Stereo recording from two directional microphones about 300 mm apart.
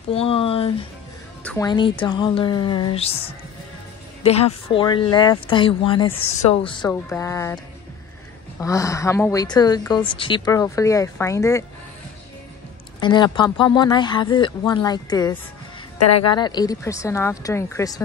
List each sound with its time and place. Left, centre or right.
0.1 s speech: centre
1.4 s music: centre
1.7 s a woman's voice: centre
4.6 s a woman's voice: centre
13.0 s a woman's voice: centre
16.0 s speech: left
16.3 s a woman's voice: centre